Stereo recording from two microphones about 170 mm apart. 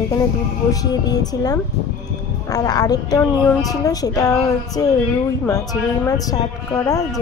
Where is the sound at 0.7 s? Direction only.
20° left (ahead or behind).